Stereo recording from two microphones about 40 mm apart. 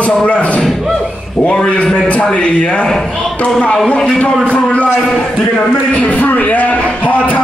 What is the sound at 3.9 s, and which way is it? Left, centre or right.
Speech, centre.